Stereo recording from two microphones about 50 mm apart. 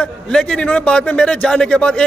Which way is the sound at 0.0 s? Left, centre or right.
Centre.